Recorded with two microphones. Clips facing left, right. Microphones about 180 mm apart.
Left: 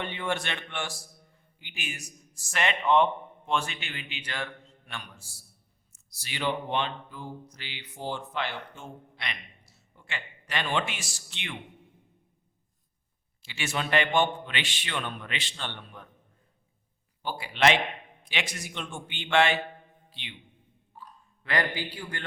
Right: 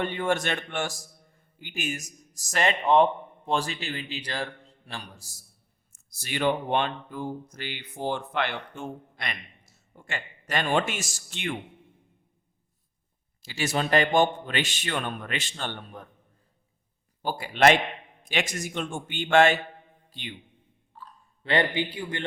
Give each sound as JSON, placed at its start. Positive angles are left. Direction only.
{"t": 0.0, "sound": "a man's voice", "side_deg": -45}
{"t": 13.4, "sound": "speech", "side_deg": -40}
{"t": 17.2, "sound": "a man's voice", "side_deg": -45}
{"t": 20.9, "sound": "a sound", "side_deg": 10}
{"t": 21.4, "sound": "a man's voice", "side_deg": -25}